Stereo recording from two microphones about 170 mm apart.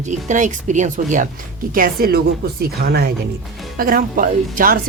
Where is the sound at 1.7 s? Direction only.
60° right (ahead or behind).